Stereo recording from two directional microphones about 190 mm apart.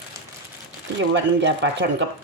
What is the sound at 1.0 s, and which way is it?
Speech, 70° right (ahead or behind).